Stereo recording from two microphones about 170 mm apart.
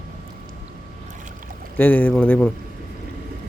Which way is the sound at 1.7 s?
10° left (ahead or behind).